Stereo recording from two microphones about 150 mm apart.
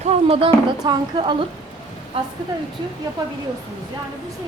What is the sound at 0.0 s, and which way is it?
Speech, 45° right (ahead or behind).